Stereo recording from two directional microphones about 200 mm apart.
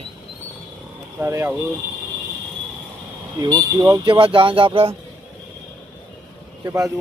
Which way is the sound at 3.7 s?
15° right (ahead or behind).